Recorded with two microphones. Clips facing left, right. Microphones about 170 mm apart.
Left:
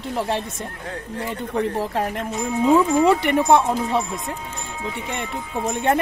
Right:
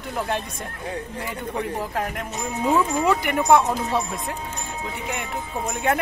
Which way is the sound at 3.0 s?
25° left (ahead or behind).